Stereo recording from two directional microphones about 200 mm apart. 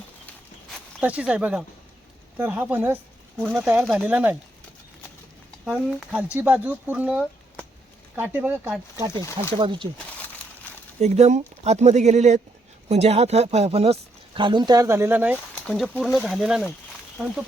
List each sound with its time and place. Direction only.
0.7 s speech: 5° right (ahead or behind)
5.6 s speech: centre (ahead or behind)
9.5 s speech: 25° right (ahead or behind)
10.0 s crumpling: 5° left (ahead or behind)
11.0 s speech: 35° right (ahead or behind); by 15.4 s 10° right (ahead or behind)
15.6 s speech: centre (ahead or behind)